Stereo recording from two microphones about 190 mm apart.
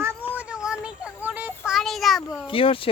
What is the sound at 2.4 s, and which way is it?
Speech, 30° left (ahead or behind).